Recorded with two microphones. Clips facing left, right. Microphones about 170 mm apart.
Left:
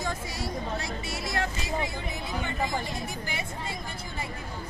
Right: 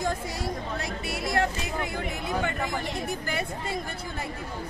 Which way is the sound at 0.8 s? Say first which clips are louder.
Right 3 dB; 60° right (ahead or behind).